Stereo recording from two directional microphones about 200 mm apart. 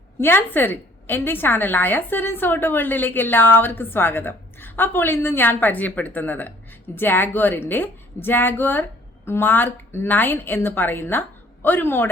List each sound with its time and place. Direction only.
0.2 s a woman's voice: 10° left (ahead or behind)